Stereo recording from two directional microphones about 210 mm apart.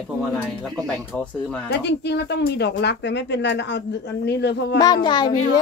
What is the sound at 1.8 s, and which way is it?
Speech, 55° left (ahead or behind).